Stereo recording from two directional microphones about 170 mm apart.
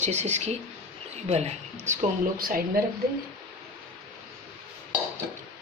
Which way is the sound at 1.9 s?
55° right (ahead or behind).